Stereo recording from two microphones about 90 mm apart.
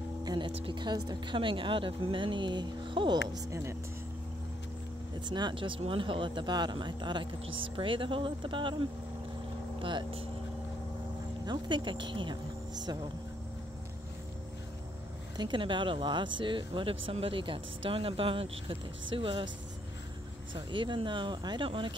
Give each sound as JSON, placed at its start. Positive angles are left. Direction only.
{"t": 0.2, "sound": "music", "side_deg": -50}
{"t": 0.6, "sound": "speech", "side_deg": -65}
{"t": 1.3, "sound": "speech", "side_deg": -65}
{"t": 3.3, "sound": "speech", "side_deg": -35}
{"t": 5.2, "sound": "speech", "side_deg": -55}
{"t": 9.8, "sound": "speech", "side_deg": -70}
{"t": 11.4, "sound": "speech", "side_deg": -55}
{"t": 15.3, "sound": "speech", "side_deg": -60}
{"t": 20.5, "sound": "speech", "side_deg": -65}
{"t": 21.6, "sound": "speech", "side_deg": -70}